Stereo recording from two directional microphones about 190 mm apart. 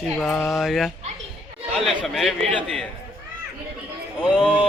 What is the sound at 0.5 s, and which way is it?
Dog, centre (ahead or behind).